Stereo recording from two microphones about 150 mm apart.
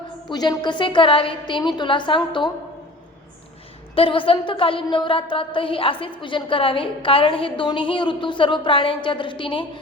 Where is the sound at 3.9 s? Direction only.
35° left (ahead or behind).